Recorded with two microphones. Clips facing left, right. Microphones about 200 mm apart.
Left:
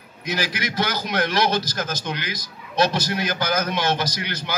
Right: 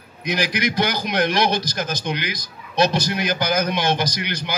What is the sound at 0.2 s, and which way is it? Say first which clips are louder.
A man's voice: right 4 dB; 15° right (ahead or behind).